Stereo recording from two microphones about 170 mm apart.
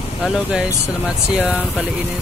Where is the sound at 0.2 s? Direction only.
5° right (ahead or behind).